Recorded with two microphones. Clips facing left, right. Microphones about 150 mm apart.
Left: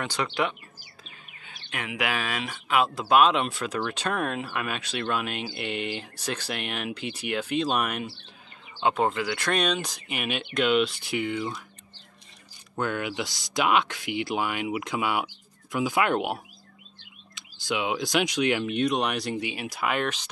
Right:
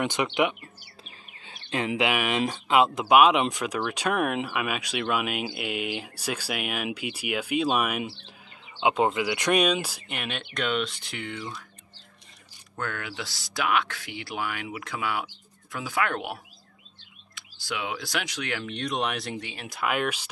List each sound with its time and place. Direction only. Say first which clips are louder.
0.0 s speech: right 3 dB; 20° right (ahead or behind)
10.0 s speech: left 3 dB; 5° left (ahead or behind)
12.7 s speech: left 5 dB; 15° left (ahead or behind)
17.4 s speech: left 4 dB; 20° left (ahead or behind); by 20.2 s 5° right (ahead or behind)